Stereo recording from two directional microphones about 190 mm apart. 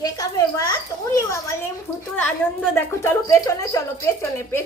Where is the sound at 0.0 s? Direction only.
20° left (ahead or behind).